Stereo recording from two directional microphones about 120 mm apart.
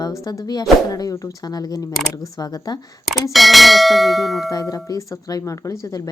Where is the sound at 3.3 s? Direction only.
Centre (ahead or behind).